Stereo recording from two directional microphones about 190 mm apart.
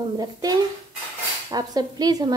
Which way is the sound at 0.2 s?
20° right (ahead or behind).